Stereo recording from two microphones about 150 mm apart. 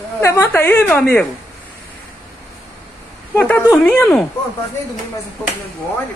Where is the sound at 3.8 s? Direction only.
10° left (ahead or behind).